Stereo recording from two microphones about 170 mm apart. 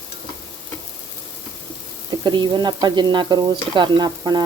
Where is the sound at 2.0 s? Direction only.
25° right (ahead or behind).